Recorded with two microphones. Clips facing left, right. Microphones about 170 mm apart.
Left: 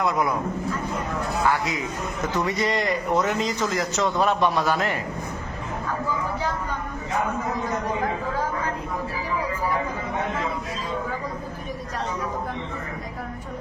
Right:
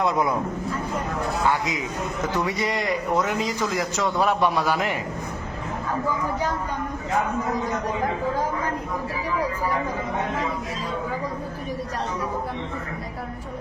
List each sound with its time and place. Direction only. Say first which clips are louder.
0.0 s a man's voice: right 1 dB; 25° right (ahead or behind)
1.5 s a man's voice: left 1 dB; 20° right (ahead or behind)